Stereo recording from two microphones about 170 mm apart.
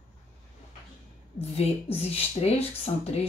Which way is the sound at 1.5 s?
35° left (ahead or behind).